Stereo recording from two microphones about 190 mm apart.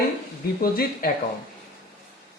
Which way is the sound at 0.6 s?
50° left (ahead or behind).